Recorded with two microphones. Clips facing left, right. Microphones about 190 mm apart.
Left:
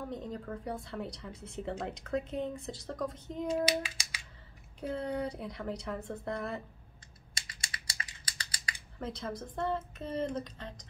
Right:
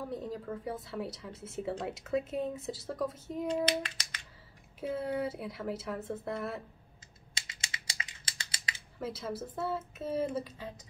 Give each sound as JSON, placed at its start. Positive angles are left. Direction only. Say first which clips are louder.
{"t": 0.0, "sound": "speech", "louder": "right 1 dB", "side_deg": -5}
{"t": 3.4, "sound": "child singing", "louder": "left 1 dB", "side_deg": 10}
{"t": 4.7, "sound": "speech", "louder": "right 1 dB", "side_deg": -5}
{"t": 7.3, "sound": "typing", "louder": "right 1 dB", "side_deg": -25}
{"t": 9.0, "sound": "speech", "louder": "right 1 dB", "side_deg": -5}